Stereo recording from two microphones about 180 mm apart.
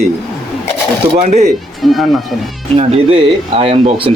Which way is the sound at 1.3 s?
40° right (ahead or behind).